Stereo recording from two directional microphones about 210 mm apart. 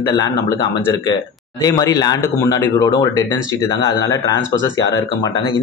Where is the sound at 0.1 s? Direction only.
15° left (ahead or behind).